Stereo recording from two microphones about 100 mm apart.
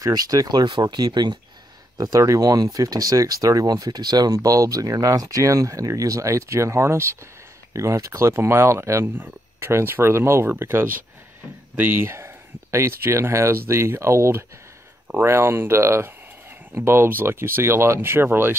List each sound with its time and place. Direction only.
0.0 s speech: 35° right (ahead or behind)
2.0 s speech: 35° right (ahead or behind)